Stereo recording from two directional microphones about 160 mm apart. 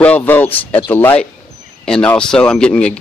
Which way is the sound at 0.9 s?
15° left (ahead or behind).